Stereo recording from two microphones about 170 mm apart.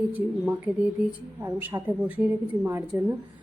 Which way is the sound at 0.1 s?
10° right (ahead or behind).